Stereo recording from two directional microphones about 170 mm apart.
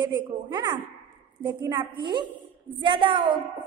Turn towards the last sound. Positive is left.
turn(degrees=-30)  # may be behind; listen again after turning